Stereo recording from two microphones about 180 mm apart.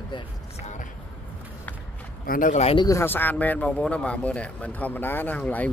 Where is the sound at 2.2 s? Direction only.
50° left (ahead or behind); by 2.9 s 35° left (ahead or behind).